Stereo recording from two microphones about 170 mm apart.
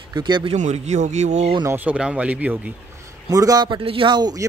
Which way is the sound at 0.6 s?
45° right (ahead or behind).